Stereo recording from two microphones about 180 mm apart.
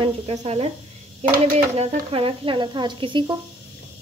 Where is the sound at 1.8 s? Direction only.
35° right (ahead or behind).